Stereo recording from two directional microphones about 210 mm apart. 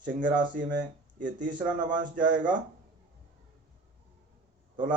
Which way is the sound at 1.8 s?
40° right (ahead or behind).